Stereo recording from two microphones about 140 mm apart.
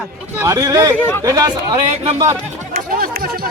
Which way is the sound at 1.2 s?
25° right (ahead or behind).